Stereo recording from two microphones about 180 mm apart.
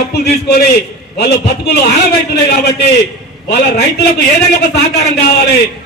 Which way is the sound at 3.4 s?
70° left (ahead or behind).